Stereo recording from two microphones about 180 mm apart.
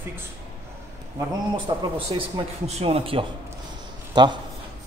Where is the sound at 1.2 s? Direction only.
25° right (ahead or behind).